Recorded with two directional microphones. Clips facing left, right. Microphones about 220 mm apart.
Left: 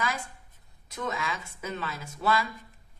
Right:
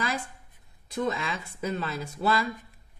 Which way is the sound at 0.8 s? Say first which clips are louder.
Right 4 dB; 35° right (ahead or behind).